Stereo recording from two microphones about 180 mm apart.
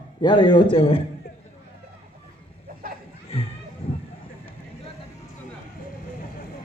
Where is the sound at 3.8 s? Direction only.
30° left (ahead or behind).